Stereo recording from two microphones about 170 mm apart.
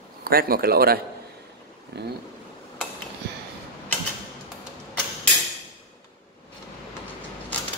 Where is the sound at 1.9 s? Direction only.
75° right (ahead or behind).